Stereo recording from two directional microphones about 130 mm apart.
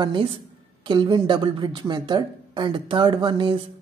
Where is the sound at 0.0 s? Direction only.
40° right (ahead or behind).